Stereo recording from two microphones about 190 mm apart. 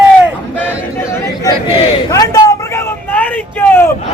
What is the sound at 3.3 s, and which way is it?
Speech, 10° left (ahead or behind).